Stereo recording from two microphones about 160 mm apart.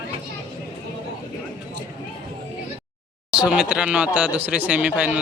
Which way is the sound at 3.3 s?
5° right (ahead or behind).